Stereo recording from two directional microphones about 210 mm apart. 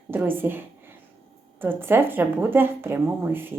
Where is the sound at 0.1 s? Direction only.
10° right (ahead or behind).